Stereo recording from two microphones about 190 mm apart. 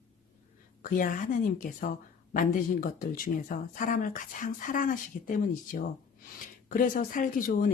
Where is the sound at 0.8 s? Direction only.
45° left (ahead or behind).